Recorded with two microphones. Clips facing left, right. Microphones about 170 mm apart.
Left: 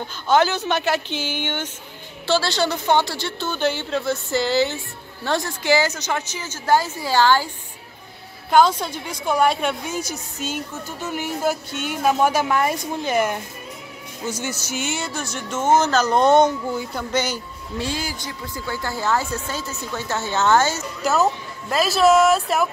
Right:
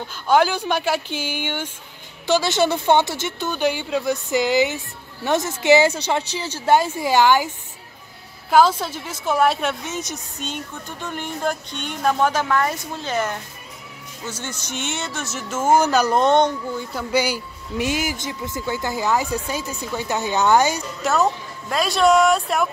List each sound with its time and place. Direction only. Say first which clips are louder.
0.3 s speech: right 1 dB; 10° right (ahead or behind)
8.5 s a woman's voice: even; 5° right (ahead or behind)
16.2 s a woman's voice: left 5 dB; 5° left (ahead or behind)
17.1 s speech: right 4 dB; 10° right (ahead or behind)
21.0 s a woman's voice: even; centre (ahead or behind)